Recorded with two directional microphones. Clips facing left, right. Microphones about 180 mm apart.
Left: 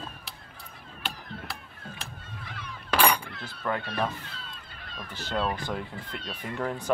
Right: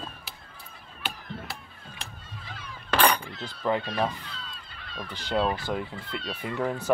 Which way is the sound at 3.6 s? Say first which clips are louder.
Right 3 dB; 20° right (ahead or behind).